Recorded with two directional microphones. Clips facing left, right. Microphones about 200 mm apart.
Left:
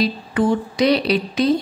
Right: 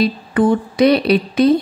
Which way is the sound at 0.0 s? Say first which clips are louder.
Right 4 dB; 55° right (ahead or behind).